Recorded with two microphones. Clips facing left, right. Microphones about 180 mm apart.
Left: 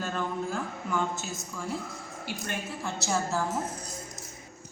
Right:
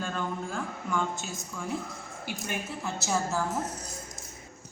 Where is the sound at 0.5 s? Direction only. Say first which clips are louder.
Even; 5° left (ahead or behind).